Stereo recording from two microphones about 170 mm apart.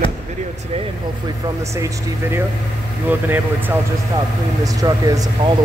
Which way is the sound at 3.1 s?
10° right (ahead or behind).